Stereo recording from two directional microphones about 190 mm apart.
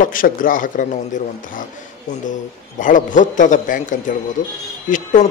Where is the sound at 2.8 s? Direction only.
45° left (ahead or behind).